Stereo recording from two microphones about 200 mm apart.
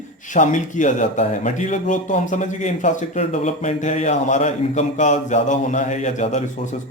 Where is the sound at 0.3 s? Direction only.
40° left (ahead or behind).